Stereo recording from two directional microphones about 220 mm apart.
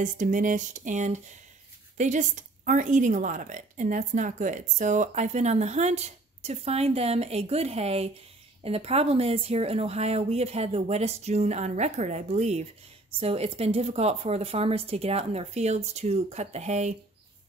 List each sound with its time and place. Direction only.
0.0 s a woman's voice: 35° right (ahead or behind)